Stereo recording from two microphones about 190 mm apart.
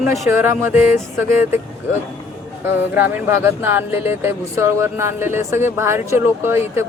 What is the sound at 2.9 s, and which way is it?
Speech, 10° right (ahead or behind).